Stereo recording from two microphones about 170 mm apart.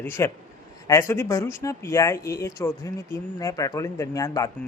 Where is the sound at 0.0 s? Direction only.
15° left (ahead or behind).